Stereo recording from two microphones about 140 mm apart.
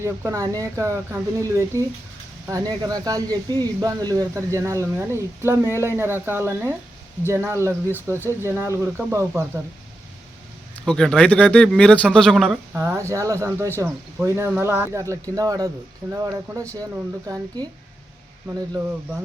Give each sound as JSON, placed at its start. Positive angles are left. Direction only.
{"t": 0.0, "sound": "speech", "side_deg": -20}
{"t": 10.8, "sound": "speech", "side_deg": 5}
{"t": 12.7, "sound": "speech", "side_deg": -20}